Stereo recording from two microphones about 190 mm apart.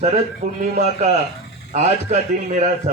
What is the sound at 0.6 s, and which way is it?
A man's voice, 35° right (ahead or behind).